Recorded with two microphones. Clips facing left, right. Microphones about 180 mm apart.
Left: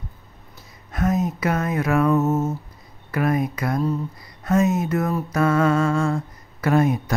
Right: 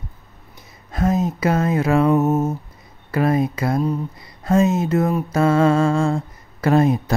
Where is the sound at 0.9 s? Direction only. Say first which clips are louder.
Right 2 dB; 30° right (ahead or behind).